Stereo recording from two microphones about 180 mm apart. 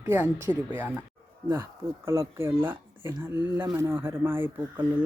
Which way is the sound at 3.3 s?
25° left (ahead or behind).